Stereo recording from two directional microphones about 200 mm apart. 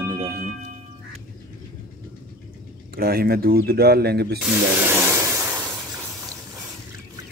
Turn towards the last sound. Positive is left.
turn(degrees=-10)  # may be behind; listen again after turning